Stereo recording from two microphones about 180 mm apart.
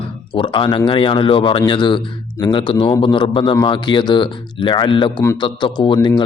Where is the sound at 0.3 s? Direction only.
25° left (ahead or behind).